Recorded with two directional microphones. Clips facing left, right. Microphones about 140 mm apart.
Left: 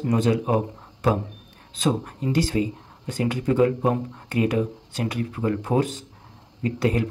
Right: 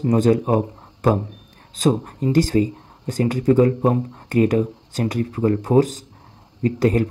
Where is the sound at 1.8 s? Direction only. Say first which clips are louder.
Right 5 dB; 40° right (ahead or behind).